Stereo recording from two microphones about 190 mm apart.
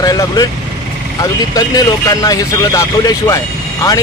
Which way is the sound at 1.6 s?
20° left (ahead or behind).